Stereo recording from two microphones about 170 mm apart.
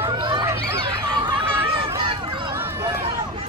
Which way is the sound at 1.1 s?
30° right (ahead or behind).